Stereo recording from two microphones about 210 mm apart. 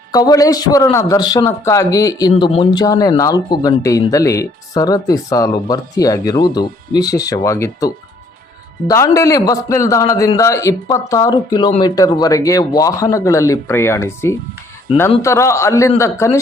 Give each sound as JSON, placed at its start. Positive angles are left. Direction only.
{"t": 0.1, "sound": "a man's voice", "side_deg": 15}
{"t": 2.8, "sound": "speech", "side_deg": 15}